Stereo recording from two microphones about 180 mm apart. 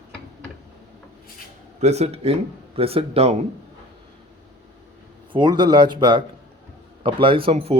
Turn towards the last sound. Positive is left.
turn(degrees=-35)  # may be behind; listen again after turning